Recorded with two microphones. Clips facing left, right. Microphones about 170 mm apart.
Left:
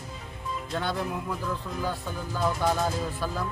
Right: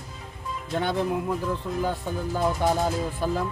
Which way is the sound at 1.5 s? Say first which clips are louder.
Right 4 dB; 20° right (ahead or behind).